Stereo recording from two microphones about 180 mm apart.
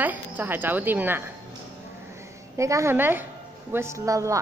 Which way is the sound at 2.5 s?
15° right (ahead or behind).